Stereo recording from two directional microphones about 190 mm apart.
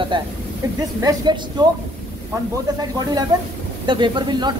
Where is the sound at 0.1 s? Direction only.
25° right (ahead or behind).